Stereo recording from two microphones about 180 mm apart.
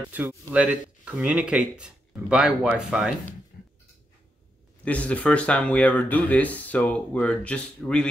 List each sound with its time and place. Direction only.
0.1 s speech: 10° right (ahead or behind)
4.8 s speech: 5° left (ahead or behind)